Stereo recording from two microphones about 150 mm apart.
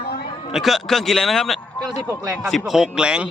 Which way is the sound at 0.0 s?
80° left.